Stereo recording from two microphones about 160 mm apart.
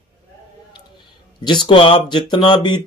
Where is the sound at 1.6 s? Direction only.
35° left (ahead or behind).